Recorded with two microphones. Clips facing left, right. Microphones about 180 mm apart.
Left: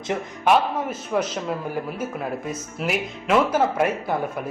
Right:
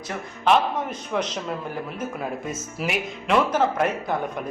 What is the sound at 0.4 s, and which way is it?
Speech, 5° left (ahead or behind).